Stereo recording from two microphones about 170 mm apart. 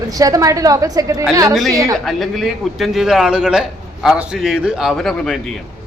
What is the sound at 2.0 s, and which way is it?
A man's voice, centre (ahead or behind).